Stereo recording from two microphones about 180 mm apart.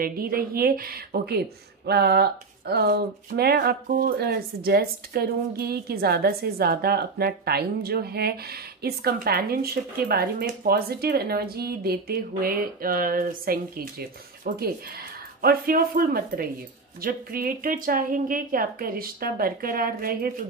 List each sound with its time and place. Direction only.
0.0 s a woman's voice: 55° right (ahead or behind)